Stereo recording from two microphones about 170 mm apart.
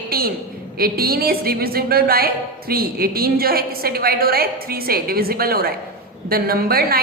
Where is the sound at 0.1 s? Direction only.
60° right (ahead or behind).